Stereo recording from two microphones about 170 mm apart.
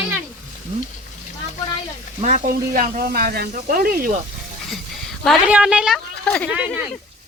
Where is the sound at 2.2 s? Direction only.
50° right (ahead or behind).